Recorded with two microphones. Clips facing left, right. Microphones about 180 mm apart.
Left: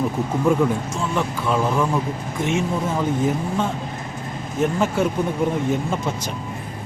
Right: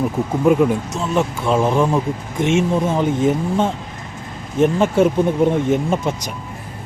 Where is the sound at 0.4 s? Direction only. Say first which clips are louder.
Right 5 dB; 20° right (ahead or behind).